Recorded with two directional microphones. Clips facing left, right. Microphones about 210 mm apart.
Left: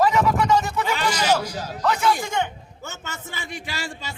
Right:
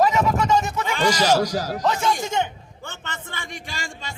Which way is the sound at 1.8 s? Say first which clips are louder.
Left 3 dB; 25° right (ahead or behind).